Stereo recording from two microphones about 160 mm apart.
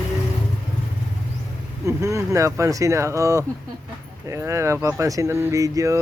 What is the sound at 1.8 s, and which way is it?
Speech, 20° right (ahead or behind).